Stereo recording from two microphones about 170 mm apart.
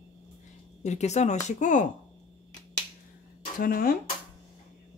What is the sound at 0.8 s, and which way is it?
Speech, 40° left (ahead or behind).